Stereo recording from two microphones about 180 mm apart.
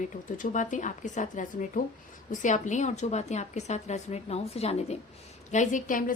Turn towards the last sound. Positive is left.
turn(degrees=50)  # may be behind; listen again after turning